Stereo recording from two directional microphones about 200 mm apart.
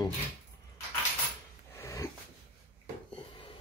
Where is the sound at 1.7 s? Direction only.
15° left (ahead or behind).